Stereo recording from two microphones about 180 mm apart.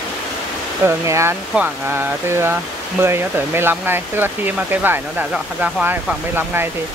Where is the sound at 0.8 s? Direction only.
15° right (ahead or behind).